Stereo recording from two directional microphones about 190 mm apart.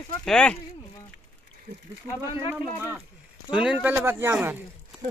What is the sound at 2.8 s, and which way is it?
Speech, 10° right (ahead or behind).